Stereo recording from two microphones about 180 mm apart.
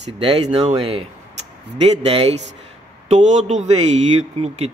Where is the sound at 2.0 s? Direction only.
35° right (ahead or behind).